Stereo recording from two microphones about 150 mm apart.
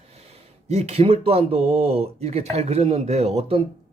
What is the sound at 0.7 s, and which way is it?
A man's voice, 45° right (ahead or behind).